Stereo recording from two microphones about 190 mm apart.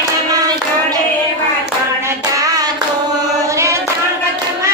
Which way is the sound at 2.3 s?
20° right (ahead or behind).